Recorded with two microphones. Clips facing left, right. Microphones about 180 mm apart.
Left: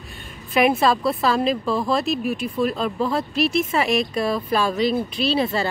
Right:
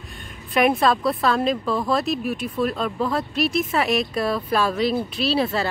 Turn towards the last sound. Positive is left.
turn(degrees=0)  # may be behind; listen again after turning